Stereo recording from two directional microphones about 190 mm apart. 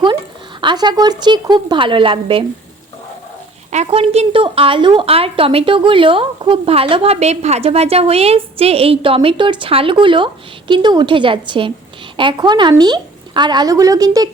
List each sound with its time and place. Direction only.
0.6 s a woman's voice: 25° right (ahead or behind)
3.7 s a woman's voice: 35° right (ahead or behind)